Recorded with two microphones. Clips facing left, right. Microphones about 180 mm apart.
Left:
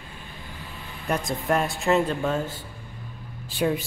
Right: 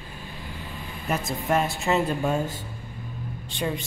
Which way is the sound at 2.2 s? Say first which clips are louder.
Right 1 dB; 15° right (ahead or behind).